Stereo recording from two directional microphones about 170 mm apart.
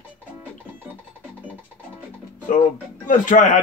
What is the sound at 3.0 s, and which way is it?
Speech, 50° left (ahead or behind).